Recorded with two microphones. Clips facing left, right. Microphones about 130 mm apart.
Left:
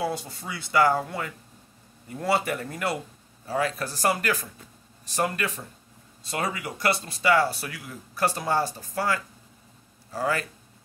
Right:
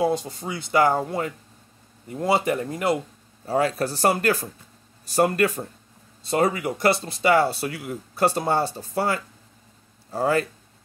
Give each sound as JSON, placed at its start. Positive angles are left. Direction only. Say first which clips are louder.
{"t": 0.0, "sound": "speech", "louder": "right 6 dB", "side_deg": -20}
{"t": 3.4, "sound": "speech", "louder": "right 5 dB", "side_deg": -30}
{"t": 6.3, "sound": "speech", "louder": "right 8 dB", "side_deg": -30}